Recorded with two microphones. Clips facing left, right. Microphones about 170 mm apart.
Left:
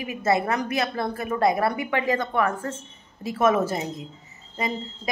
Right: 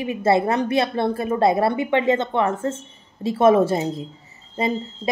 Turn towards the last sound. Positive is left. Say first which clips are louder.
# right 6 dB
turn(degrees=-30)  # may be behind; listen again after turning